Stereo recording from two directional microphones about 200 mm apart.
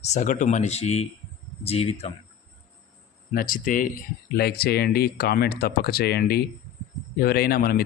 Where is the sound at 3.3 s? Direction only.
45° left (ahead or behind).